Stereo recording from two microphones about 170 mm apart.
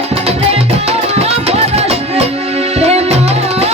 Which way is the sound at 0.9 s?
40° right (ahead or behind).